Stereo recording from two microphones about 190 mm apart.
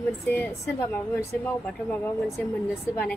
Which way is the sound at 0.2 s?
10° left (ahead or behind).